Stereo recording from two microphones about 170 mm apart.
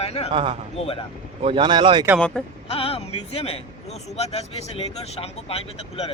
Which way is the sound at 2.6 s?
35° left (ahead or behind).